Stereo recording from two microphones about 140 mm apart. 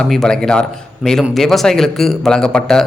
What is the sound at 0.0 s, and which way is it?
A man's voice, 5° left (ahead or behind).